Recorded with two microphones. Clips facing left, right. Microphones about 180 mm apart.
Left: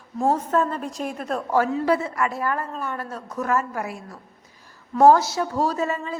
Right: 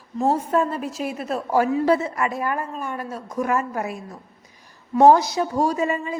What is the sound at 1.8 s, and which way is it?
A woman's voice, 25° right (ahead or behind).